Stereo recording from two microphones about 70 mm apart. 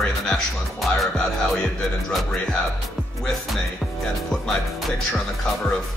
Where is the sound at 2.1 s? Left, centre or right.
Centre.